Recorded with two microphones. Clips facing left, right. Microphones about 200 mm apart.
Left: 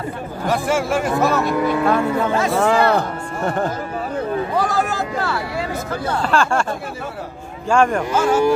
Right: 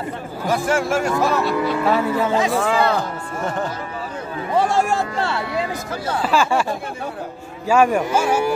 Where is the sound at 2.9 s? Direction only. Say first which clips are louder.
Left 3 dB; 60° left (ahead or behind).